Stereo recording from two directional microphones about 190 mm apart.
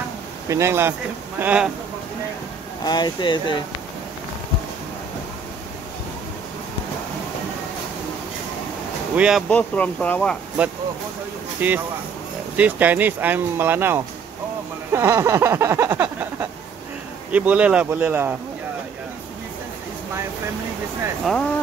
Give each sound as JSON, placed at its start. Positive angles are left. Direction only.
{"t": 0.5, "sound": "speech", "side_deg": -15}
{"t": 2.8, "sound": "speech", "side_deg": 20}
{"t": 9.1, "sound": "speech", "side_deg": -5}
{"t": 9.5, "sound": "speech", "side_deg": 5}
{"t": 10.6, "sound": "speech", "side_deg": -5}
{"t": 14.9, "sound": "a sound", "side_deg": -15}
{"t": 17.3, "sound": "speech", "side_deg": -5}